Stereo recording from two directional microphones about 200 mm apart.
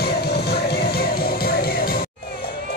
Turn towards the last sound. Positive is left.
turn(degrees=45)  # may be behind; listen again after turning